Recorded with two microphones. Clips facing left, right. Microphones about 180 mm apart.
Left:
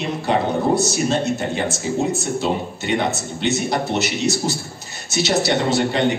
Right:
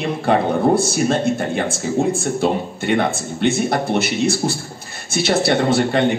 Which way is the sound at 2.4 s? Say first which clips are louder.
Right 3 dB; 55° right (ahead or behind).